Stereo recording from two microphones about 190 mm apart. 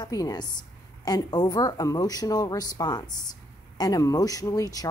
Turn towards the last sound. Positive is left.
turn(degrees=20)  # may be behind; listen again after turning